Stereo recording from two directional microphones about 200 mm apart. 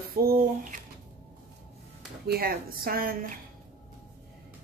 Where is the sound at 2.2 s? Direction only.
50° right (ahead or behind).